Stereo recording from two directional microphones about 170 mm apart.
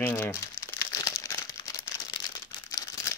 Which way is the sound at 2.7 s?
20° left (ahead or behind).